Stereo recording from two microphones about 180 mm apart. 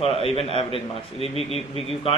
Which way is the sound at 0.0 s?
30° left (ahead or behind).